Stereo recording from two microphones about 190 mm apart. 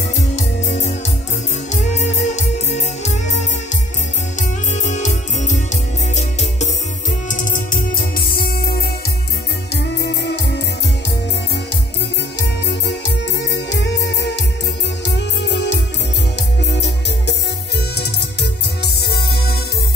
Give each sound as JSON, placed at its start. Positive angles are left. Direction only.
{"t": 1.7, "sound": "music", "side_deg": 35}
{"t": 4.4, "sound": "music", "side_deg": 40}
{"t": 9.8, "sound": "music", "side_deg": 65}
{"t": 12.4, "sound": "music", "side_deg": 65}